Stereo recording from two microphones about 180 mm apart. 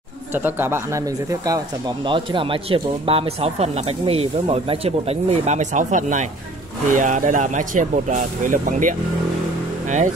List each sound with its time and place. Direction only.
0.3 s speech: 10° right (ahead or behind); by 8.9 s 45° right (ahead or behind)